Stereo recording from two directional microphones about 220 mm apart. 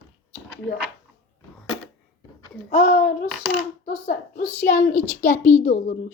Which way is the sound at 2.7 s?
40° left (ahead or behind).